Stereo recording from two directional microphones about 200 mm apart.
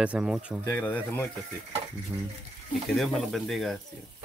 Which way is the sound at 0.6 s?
10° left (ahead or behind).